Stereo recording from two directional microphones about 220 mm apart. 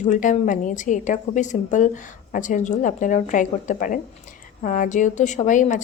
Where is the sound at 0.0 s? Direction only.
35° left (ahead or behind).